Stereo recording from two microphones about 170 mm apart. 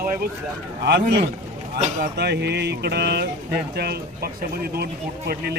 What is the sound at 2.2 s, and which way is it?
Speech, 80° right.